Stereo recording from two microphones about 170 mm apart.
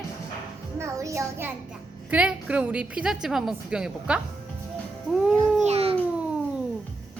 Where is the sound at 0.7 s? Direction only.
15° right (ahead or behind).